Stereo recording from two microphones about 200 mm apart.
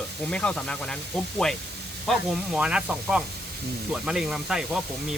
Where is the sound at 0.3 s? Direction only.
5° left (ahead or behind).